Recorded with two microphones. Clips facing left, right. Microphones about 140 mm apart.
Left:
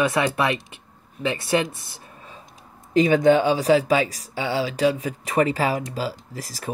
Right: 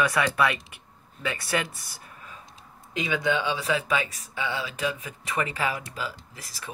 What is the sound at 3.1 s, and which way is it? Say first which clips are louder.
Speech: left 8 dB; 45° left (ahead or behind).